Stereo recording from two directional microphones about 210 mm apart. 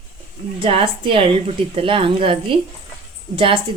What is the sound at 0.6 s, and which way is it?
A woman's voice, 25° right (ahead or behind).